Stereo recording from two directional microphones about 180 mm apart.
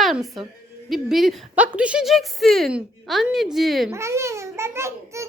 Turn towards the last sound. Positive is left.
turn(degrees=-15)  # may be behind; listen again after turning